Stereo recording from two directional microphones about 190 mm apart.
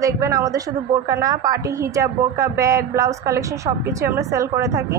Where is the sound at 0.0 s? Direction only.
15° right (ahead or behind).